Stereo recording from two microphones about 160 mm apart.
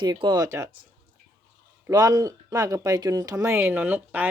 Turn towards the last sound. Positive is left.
turn(degrees=-10)  # may be behind; listen again after turning